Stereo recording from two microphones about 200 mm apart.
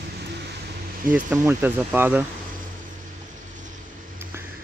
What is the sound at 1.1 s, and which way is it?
Speech, 10° right (ahead or behind).